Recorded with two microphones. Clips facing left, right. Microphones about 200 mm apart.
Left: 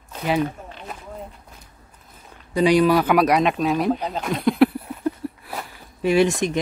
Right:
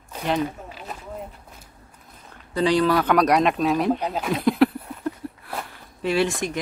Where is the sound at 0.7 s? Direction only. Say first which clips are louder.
Even; 5° right (ahead or behind).